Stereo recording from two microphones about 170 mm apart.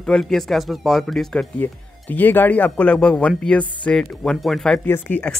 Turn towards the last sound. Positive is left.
turn(degrees=5)  # may be behind; listen again after turning